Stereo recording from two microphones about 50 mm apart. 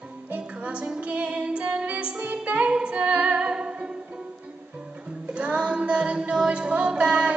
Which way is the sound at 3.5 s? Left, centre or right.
Centre.